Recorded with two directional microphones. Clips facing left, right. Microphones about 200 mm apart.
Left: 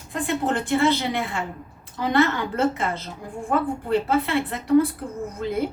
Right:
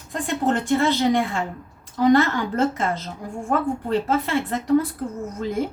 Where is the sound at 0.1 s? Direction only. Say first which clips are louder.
Right 2 dB; 40° right (ahead or behind).